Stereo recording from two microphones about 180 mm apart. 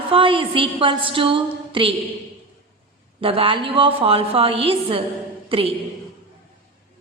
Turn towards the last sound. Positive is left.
turn(degrees=-30)  # may be behind; listen again after turning